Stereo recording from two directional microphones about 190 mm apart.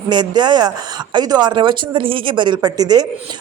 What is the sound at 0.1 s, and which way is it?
Speech, 25° right (ahead or behind).